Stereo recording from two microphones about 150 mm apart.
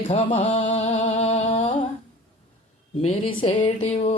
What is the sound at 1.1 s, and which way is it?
Music, 45° left (ahead or behind).